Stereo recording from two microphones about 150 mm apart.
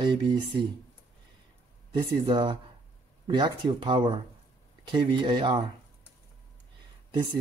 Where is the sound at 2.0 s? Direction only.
30° right (ahead or behind).